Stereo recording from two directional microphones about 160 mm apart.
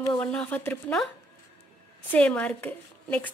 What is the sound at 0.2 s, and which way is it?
Speech, 5° left (ahead or behind).